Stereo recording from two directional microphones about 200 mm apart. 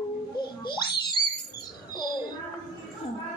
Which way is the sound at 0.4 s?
20° left (ahead or behind).